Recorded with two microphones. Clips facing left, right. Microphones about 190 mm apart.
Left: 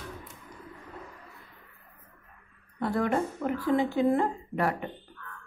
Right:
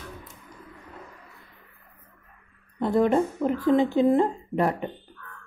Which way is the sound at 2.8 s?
20° right (ahead or behind).